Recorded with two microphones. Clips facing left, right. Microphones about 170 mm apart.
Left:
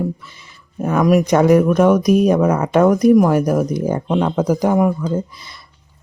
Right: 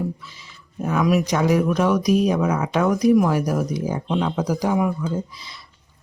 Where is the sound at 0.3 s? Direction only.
55° left (ahead or behind).